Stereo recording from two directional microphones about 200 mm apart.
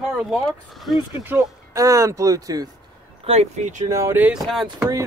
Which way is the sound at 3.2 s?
30° right (ahead or behind).